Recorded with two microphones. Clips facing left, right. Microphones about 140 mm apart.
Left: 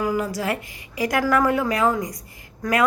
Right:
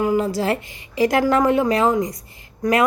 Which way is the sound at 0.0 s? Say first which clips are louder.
Right 4 dB; 25° right (ahead or behind).